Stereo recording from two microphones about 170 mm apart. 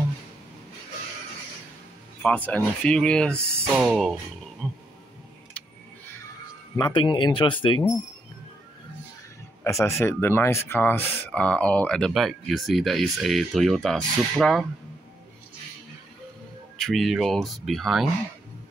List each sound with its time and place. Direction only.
2.2 s speech: 10° left (ahead or behind)
3.3 s speech: 15° right (ahead or behind)
3.8 s speech: 5° right (ahead or behind)
4.6 s a sound: 5° left (ahead or behind)
6.8 s speech: 25° left (ahead or behind)
9.8 s speech: 15° left (ahead or behind)
16.7 s speech: centre (ahead or behind)